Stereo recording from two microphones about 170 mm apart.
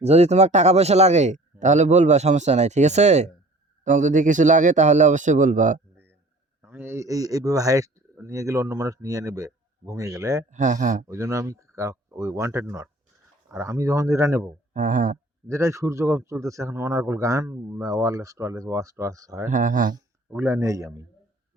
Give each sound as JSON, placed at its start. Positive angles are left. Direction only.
{"t": 0.0, "sound": "a man's voice", "side_deg": -40}
{"t": 6.6, "sound": "a man's voice", "side_deg": -15}
{"t": 10.5, "sound": "a man's voice", "side_deg": -45}
{"t": 11.0, "sound": "a man's voice", "side_deg": -15}
{"t": 14.7, "sound": "a man's voice", "side_deg": -50}
{"t": 15.4, "sound": "a man's voice", "side_deg": -15}
{"t": 19.5, "sound": "a man's voice", "side_deg": -50}
{"t": 20.3, "sound": "a man's voice", "side_deg": -15}